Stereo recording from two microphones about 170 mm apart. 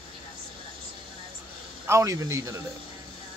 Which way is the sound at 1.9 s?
20° right (ahead or behind).